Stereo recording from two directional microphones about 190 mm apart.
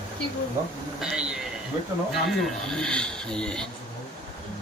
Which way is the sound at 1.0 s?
5° right (ahead or behind).